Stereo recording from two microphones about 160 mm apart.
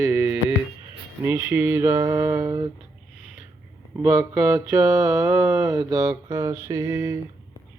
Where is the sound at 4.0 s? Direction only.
15° right (ahead or behind).